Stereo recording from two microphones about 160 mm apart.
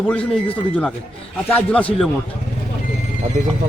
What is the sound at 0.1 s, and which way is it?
A man's voice, 10° left (ahead or behind).